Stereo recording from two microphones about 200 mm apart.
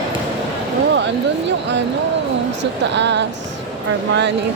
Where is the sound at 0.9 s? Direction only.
60° right (ahead or behind).